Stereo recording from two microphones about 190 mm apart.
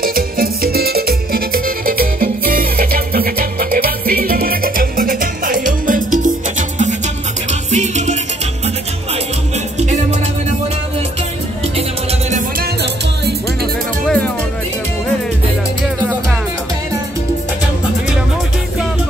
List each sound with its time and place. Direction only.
0.0 s music: 50° right (ahead or behind)
7.7 s music: 40° right (ahead or behind)
12.3 s music: 40° right (ahead or behind)
14.0 s music: 5° left (ahead or behind)